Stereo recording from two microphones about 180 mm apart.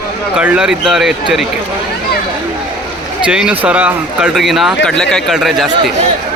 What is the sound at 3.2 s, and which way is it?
Speech, 5° right (ahead or behind).